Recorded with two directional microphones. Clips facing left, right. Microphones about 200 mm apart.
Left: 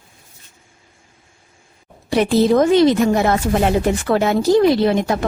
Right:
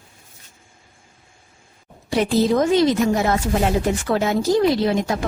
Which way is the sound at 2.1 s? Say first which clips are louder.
Left 4 dB; 65° left (ahead or behind).